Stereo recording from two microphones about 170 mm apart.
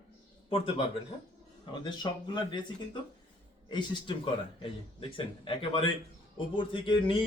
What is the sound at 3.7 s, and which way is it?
Speech, 30° left (ahead or behind).